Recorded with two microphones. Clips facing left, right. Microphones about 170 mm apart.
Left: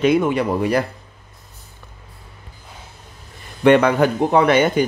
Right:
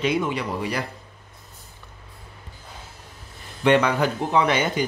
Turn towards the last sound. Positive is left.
turn(degrees=55)  # may be behind; listen again after turning